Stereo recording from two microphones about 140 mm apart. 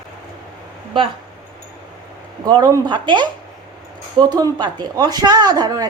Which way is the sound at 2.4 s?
30° right (ahead or behind).